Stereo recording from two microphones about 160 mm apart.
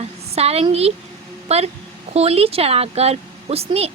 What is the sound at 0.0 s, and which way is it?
A woman's voice, 40° right (ahead or behind).